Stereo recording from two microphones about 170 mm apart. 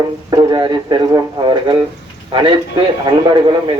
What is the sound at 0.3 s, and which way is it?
Speech, 25° right (ahead or behind).